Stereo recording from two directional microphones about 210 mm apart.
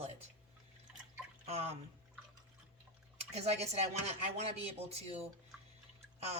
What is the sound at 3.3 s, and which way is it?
Speech, 30° right (ahead or behind).